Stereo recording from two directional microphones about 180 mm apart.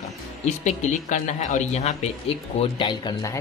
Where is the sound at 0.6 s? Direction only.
45° left (ahead or behind).